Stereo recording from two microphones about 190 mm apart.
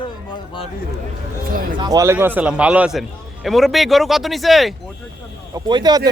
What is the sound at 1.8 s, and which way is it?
A man's voice, 20° right (ahead or behind).